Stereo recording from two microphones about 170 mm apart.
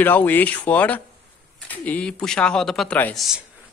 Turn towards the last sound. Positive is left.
turn(degrees=10)  # may be behind; listen again after turning